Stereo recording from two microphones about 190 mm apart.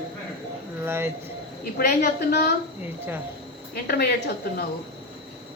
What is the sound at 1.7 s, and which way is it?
Speech, 55° left (ahead or behind).